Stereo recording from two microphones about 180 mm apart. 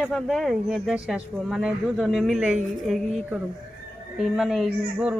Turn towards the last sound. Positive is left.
turn(degrees=0)  # may be behind; listen again after turning